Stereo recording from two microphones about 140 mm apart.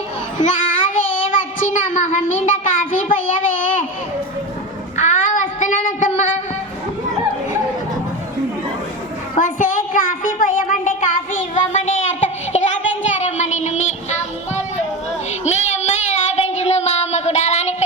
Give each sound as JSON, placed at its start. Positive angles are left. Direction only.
{"t": 0.4, "sound": "child singing", "side_deg": 65}
{"t": 4.9, "sound": "child singing", "side_deg": 60}
{"t": 9.3, "sound": "a sound", "side_deg": 65}
{"t": 13.1, "sound": "child singing", "side_deg": 55}